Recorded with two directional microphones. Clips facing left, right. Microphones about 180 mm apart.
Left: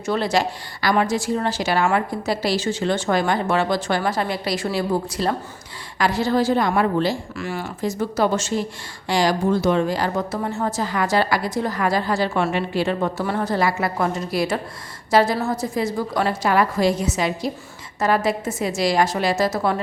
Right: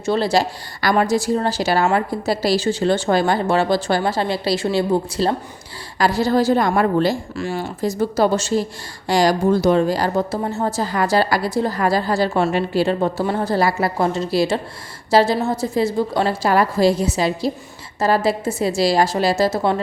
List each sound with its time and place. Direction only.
0.0 s a woman's voice: 30° right (ahead or behind)
0.8 s a woman's voice: 45° right (ahead or behind); by 5.4 s 25° right (ahead or behind)
6.0 s a woman's voice: 35° right (ahead or behind)
7.3 s a woman's voice: 30° right (ahead or behind)